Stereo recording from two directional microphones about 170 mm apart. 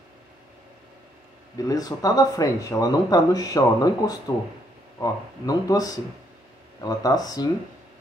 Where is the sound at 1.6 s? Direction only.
20° left (ahead or behind).